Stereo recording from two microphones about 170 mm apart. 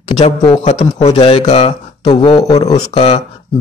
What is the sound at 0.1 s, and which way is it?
Speech, 30° left (ahead or behind).